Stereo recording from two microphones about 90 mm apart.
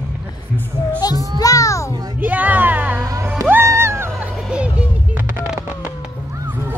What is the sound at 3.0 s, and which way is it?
Music, 30° right (ahead or behind).